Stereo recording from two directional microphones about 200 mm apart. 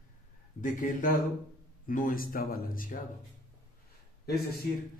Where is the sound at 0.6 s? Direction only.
40° left (ahead or behind).